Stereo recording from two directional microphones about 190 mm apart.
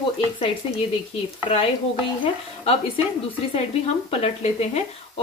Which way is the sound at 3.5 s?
35° left (ahead or behind).